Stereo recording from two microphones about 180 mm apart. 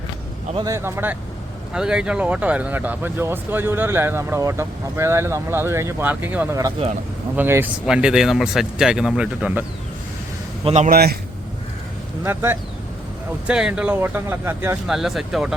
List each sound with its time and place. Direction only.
0.5 s speech: 20° right (ahead or behind)
10.6 s a man's voice: 35° right (ahead or behind)
10.8 s a man's voice: 55° right (ahead or behind)
12.2 s speech: 15° right (ahead or behind)
14.8 s speech: centre (ahead or behind)